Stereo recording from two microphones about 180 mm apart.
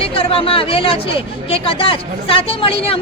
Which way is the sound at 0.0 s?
30° left (ahead or behind).